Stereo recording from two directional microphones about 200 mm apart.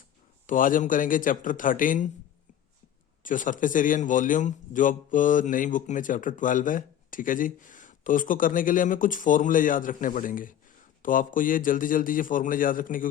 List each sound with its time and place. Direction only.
0.4 s a man's voice: 40° left (ahead or behind)
3.2 s a man's voice: 40° left (ahead or behind)